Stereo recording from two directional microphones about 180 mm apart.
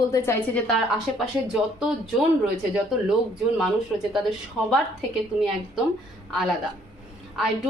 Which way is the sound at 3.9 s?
5° right (ahead or behind).